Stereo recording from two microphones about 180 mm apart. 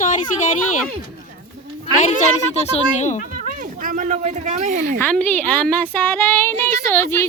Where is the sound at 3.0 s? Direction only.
40° left (ahead or behind).